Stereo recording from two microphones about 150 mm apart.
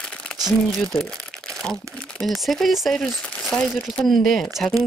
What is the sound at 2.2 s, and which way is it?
Speech, centre (ahead or behind).